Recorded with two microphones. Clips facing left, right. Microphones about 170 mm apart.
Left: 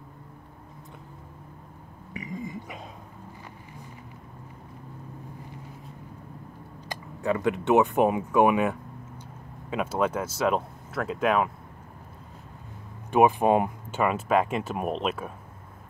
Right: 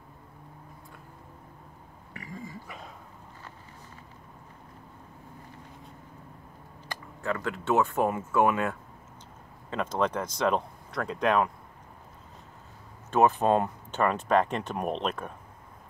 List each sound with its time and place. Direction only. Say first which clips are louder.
2.1 s a sound: left 6 dB; 20° left (ahead or behind)
6.9 s speech: left 5 dB; 20° left (ahead or behind)
13.1 s speech: left 2 dB; 15° left (ahead or behind)